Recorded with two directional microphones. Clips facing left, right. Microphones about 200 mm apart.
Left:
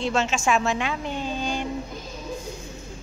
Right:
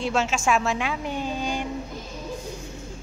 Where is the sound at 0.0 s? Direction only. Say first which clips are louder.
Even; 5° right (ahead or behind).